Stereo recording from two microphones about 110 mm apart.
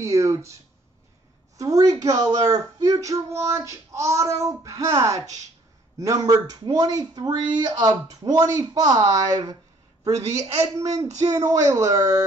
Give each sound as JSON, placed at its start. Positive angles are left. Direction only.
{"t": 0.0, "sound": "child singing", "side_deg": -30}
{"t": 1.6, "sound": "speech", "side_deg": -30}
{"t": 2.4, "sound": "child singing", "side_deg": -30}
{"t": 5.9, "sound": "speech", "side_deg": -30}